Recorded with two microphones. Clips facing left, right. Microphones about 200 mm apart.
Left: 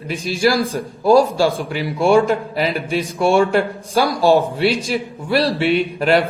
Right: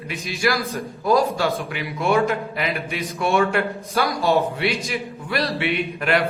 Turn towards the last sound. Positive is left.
turn(degrees=30)  # may be behind; listen again after turning